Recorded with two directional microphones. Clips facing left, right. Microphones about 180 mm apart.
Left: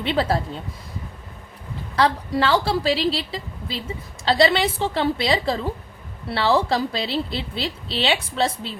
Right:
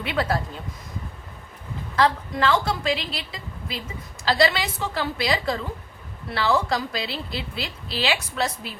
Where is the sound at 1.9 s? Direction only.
30° left (ahead or behind).